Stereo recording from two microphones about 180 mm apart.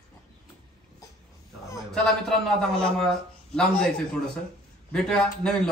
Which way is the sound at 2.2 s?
5° left (ahead or behind).